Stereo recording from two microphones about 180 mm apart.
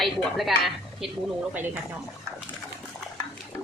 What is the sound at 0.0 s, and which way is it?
Speech, centre (ahead or behind).